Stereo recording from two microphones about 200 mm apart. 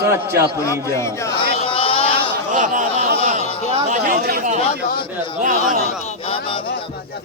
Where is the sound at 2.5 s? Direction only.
40° right (ahead or behind).